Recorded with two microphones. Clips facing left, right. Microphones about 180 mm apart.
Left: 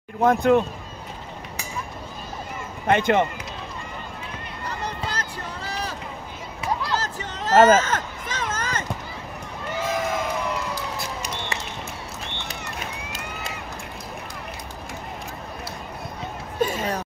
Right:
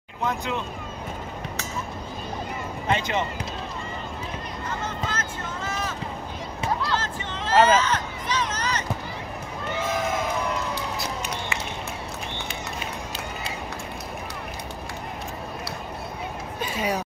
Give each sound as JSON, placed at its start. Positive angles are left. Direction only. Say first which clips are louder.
{"t": 0.2, "sound": "speech", "louder": "left 10 dB", "side_deg": 50}
{"t": 2.9, "sound": "speech", "louder": "left 6 dB", "side_deg": 55}
{"t": 4.6, "sound": "run", "louder": "left 1 dB", "side_deg": 35}
{"t": 6.9, "sound": "a sound", "louder": "even", "side_deg": 40}
{"t": 16.7, "sound": "speech", "louder": "right 1 dB", "side_deg": -10}